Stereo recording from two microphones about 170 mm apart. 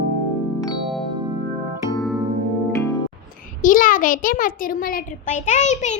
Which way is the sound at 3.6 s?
50° left (ahead or behind).